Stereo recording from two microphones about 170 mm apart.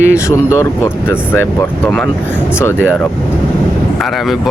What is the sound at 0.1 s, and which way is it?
Speech, 15° left (ahead or behind).